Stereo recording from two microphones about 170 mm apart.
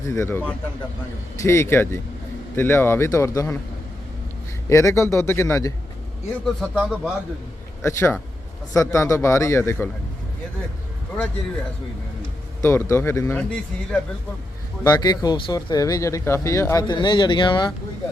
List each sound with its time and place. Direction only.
0.0 s speech: 15° left (ahead or behind)
4.7 s speech: 15° left (ahead or behind)
6.4 s a man's voice: centre (ahead or behind)
7.8 s a man's voice: 15° left (ahead or behind)
12.6 s speech: 15° left (ahead or behind)
14.8 s speech: 25° left (ahead or behind)